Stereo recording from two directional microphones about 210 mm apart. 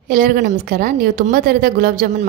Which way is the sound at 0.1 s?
40° right (ahead or behind).